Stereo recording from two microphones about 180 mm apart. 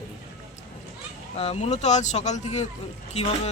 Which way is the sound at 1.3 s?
35° left (ahead or behind).